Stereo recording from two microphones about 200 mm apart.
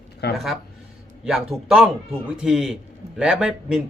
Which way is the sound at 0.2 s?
55° left (ahead or behind).